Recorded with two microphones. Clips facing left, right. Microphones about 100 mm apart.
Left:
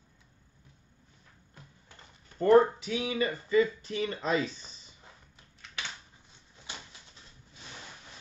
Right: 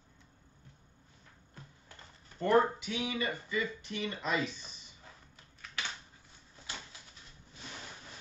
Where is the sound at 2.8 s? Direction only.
35° left (ahead or behind).